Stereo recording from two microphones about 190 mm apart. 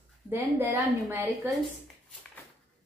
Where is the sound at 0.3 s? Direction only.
10° right (ahead or behind).